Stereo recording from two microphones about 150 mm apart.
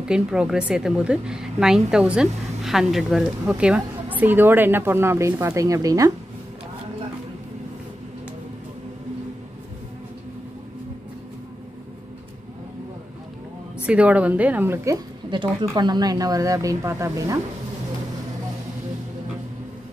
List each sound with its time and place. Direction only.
0.1 s a woman's voice: 5° right (ahead or behind); by 6.1 s 25° right (ahead or behind)
13.8 s a woman's voice: 10° right (ahead or behind)
15.6 s speech: 25° right (ahead or behind)